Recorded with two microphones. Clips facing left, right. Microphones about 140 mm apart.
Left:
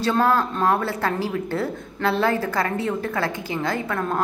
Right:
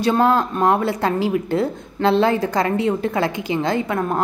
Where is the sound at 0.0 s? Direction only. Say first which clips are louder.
Right 3 dB; 15° right (ahead or behind).